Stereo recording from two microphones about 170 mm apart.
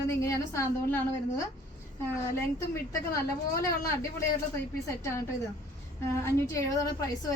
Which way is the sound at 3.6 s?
20° left (ahead or behind).